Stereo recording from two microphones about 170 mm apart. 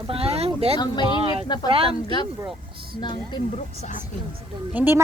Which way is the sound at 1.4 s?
25° left (ahead or behind).